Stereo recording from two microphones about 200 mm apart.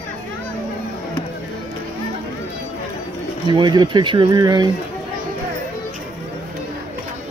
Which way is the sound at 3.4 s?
20° right (ahead or behind).